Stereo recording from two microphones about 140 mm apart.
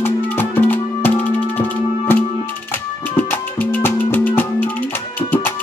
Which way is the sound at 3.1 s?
15° left (ahead or behind).